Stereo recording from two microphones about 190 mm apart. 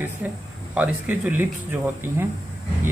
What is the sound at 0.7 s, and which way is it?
Speech, 10° right (ahead or behind).